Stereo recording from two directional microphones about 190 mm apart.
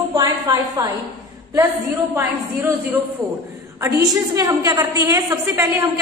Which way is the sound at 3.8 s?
15° right (ahead or behind).